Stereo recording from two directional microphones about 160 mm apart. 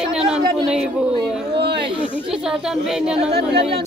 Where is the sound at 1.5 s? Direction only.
90° right.